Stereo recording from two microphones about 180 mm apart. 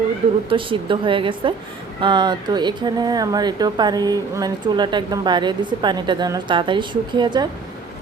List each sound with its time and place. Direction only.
0.5 s speech: 30° right (ahead or behind)